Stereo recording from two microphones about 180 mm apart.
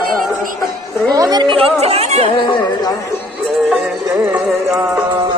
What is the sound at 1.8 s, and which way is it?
Speech, 35° right (ahead or behind).